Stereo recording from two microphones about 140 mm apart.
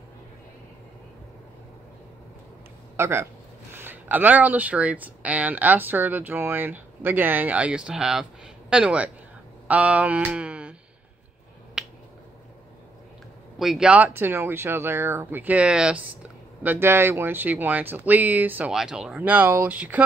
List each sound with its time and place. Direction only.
3.0 s speech: 20° right (ahead or behind)
9.7 s a sound: 10° right (ahead or behind)
11.8 s finger snapping: 5° right (ahead or behind)
13.6 s speech: 5° right (ahead or behind)